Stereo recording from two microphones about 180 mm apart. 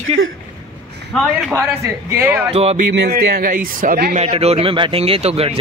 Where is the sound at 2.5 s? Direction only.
35° right (ahead or behind).